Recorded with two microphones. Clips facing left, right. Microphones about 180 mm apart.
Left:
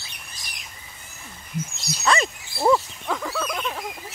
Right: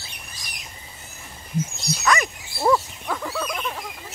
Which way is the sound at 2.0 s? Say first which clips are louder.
Left 1 dB; 25° left (ahead or behind).